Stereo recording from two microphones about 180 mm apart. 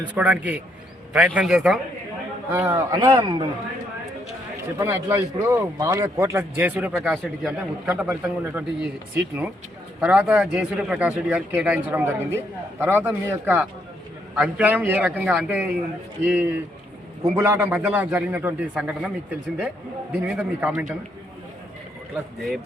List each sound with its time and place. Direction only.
0.1 s a man's voice: 5° right (ahead or behind); by 3.4 s 25° right (ahead or behind)
4.8 s a man's voice: 15° right (ahead or behind)
20.2 s a man's voice: 5° right (ahead or behind)
22.4 s a man's voice: centre (ahead or behind)